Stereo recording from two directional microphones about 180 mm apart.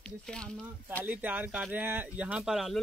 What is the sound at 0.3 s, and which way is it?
Speech, 5° left (ahead or behind).